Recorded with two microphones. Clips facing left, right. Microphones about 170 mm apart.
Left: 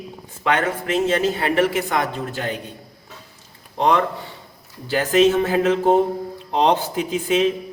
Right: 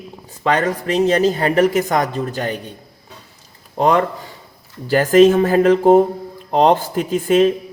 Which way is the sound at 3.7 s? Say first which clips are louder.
Right 3 dB; 45° right (ahead or behind).